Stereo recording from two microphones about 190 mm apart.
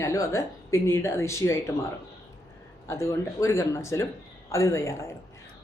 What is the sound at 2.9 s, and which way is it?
Speech, 15° left (ahead or behind).